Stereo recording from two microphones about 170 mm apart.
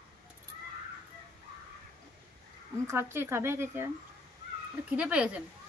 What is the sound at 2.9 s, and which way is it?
Speech, 15° right (ahead or behind).